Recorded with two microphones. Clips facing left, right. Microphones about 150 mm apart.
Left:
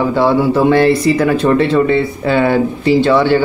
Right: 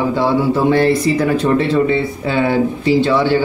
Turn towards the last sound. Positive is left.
turn(degrees=65)  # may be behind; listen again after turning